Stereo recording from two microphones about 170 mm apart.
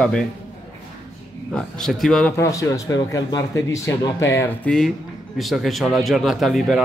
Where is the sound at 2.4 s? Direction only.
20° left (ahead or behind).